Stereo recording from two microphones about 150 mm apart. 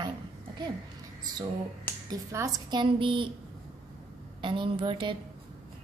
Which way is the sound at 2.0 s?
25° right (ahead or behind).